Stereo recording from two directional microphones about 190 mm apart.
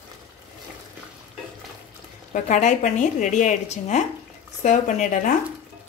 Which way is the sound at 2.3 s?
40° left (ahead or behind).